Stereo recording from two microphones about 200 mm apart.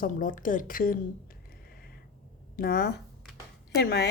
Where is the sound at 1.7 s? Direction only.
50° left (ahead or behind).